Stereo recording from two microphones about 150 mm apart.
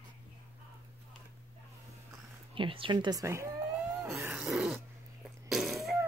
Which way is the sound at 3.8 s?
10° right (ahead or behind).